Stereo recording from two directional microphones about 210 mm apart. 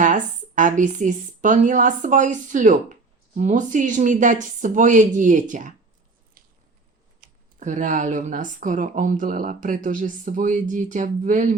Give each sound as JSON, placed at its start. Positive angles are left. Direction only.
{"t": 0.0, "sound": "a woman's voice", "side_deg": -35}
{"t": 7.6, "sound": "a woman's voice", "side_deg": -35}